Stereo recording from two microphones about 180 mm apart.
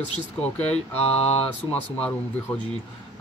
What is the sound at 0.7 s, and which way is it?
Mantra, 35° left (ahead or behind).